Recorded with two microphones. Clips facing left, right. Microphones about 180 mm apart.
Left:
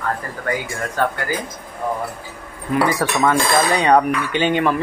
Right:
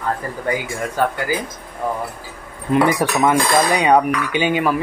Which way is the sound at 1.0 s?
10° right (ahead or behind).